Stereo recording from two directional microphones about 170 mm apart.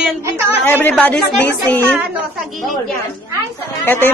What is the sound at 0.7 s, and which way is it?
A man's voice, 10° left (ahead or behind).